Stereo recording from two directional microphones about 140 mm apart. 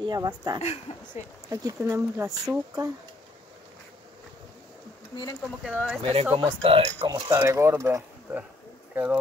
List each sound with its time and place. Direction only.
0.0 s speech: 30° right (ahead or behind)
0.6 s speech: 50° left (ahead or behind)
1.5 s speech: 25° right (ahead or behind)
5.1 s speech: 30° left (ahead or behind)
5.7 s speech: 10° right (ahead or behind)
6.3 s speech: 40° right (ahead or behind)
7.1 s speech: 25° right (ahead or behind); by 9.2 s 5° right (ahead or behind)